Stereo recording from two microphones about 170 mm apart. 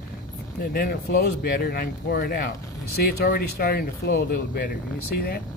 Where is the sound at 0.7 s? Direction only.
65° left (ahead or behind).